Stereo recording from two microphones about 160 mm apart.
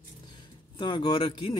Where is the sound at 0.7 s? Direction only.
30° left (ahead or behind).